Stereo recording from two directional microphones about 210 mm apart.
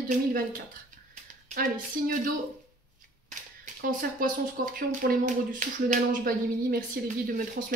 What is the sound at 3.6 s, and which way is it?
Speech, 40° right (ahead or behind).